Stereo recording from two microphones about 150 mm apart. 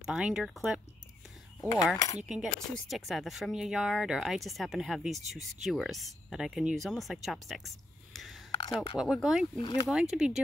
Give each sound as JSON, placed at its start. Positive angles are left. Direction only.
{"t": 0.0, "sound": "speech", "side_deg": -5}
{"t": 2.2, "sound": "a woman's voice", "side_deg": -5}
{"t": 8.5, "sound": "a sound", "side_deg": 35}
{"t": 8.9, "sound": "speech", "side_deg": 0}
{"t": 9.6, "sound": "speech", "side_deg": 30}
{"t": 9.8, "sound": "speech", "side_deg": -5}